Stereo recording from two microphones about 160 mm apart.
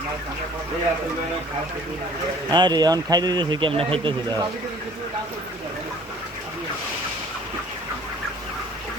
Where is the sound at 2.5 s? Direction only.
25° right (ahead or behind).